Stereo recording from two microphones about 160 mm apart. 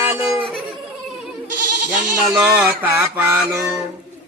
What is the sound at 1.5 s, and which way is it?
Goat, 55° right (ahead or behind).